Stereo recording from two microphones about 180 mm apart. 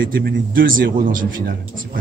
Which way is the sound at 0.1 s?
55° right (ahead or behind).